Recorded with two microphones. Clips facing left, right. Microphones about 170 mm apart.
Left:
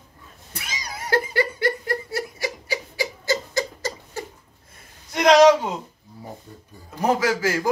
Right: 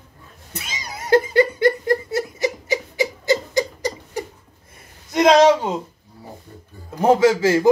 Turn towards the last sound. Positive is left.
turn(degrees=-25)  # may be behind; listen again after turning